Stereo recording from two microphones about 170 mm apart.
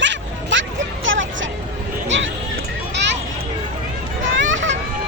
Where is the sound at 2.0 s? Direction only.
90° right.